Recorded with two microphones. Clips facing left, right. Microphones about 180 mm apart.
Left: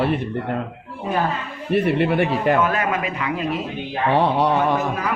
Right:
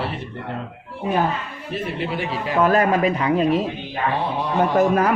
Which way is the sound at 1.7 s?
60° left (ahead or behind).